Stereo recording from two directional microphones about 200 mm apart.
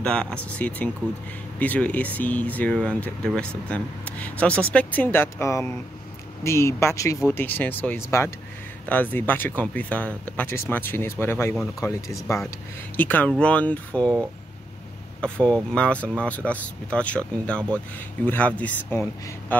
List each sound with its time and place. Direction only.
0.0 s speech: 5° left (ahead or behind)
15.1 s speech: 5° left (ahead or behind)